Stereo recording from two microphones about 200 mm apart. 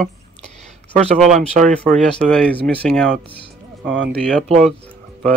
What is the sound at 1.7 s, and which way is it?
Speech, 5° left (ahead or behind).